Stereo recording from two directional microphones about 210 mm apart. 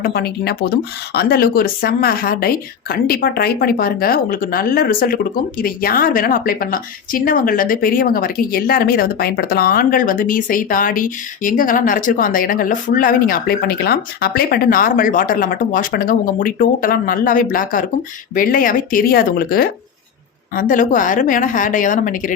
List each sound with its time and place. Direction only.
0.0 s a woman's voice: 45° left (ahead or behind)